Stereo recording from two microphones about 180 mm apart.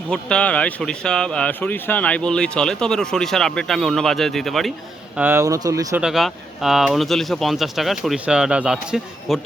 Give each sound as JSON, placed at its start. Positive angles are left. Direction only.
{"t": 0.1, "sound": "speech", "side_deg": 5}
{"t": 5.1, "sound": "speech", "side_deg": -10}
{"t": 6.0, "sound": "speech", "side_deg": 0}